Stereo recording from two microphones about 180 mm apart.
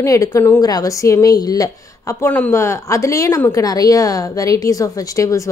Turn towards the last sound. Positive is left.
turn(degrees=20)  # may be behind; listen again after turning